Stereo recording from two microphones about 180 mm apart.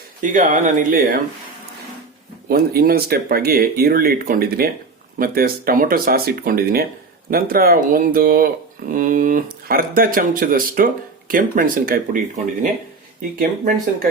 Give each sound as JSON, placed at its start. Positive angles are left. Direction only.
{"t": 0.2, "sound": "speech", "side_deg": -45}
{"t": 2.5, "sound": "speech", "side_deg": -55}
{"t": 13.4, "sound": "speech", "side_deg": -50}